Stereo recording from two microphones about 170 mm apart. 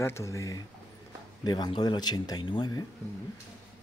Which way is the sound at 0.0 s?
15° left (ahead or behind).